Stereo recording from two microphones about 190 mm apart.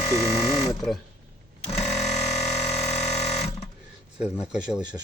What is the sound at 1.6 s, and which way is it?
Sewing machine, 35° left (ahead or behind).